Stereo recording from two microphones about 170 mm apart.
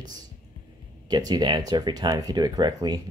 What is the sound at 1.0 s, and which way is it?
Speech, 25° right (ahead or behind).